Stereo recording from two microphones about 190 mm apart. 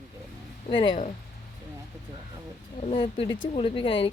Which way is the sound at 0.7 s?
25° left (ahead or behind).